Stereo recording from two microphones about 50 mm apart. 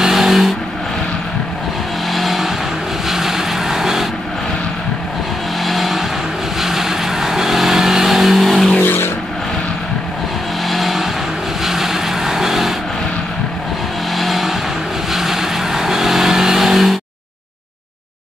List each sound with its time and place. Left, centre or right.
0.0 s vehicle: centre
2.1 s vehicle: centre
5.6 s vehicle: centre
8.8 s vehicle: left
10.7 s vehicle: centre
14.1 s vehicle: centre